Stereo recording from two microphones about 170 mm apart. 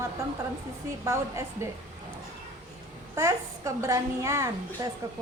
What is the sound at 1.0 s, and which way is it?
Speech, 15° right (ahead or behind).